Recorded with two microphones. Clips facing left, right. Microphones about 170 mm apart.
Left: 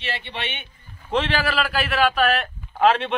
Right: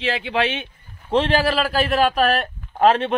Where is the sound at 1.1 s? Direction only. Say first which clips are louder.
Right 4 dB; 35° right (ahead or behind).